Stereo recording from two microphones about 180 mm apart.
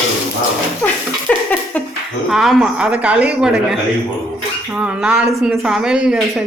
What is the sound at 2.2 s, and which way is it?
A woman's voice, centre (ahead or behind).